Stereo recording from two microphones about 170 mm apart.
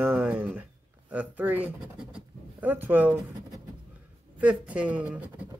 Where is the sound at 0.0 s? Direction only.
10° right (ahead or behind).